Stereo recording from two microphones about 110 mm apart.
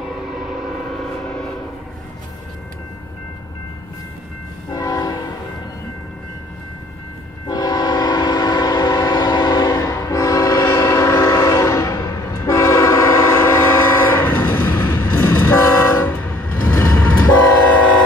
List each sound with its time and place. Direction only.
0.1 s civil defense siren: 5° right (ahead or behind)
4.7 s train horn: 35° left (ahead or behind)
7.4 s train: 35° left (ahead or behind)
9.7 s train: 30° left (ahead or behind); by 17.2 s 15° left (ahead or behind)